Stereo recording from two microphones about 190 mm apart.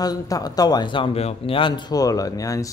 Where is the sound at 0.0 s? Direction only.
20° left (ahead or behind).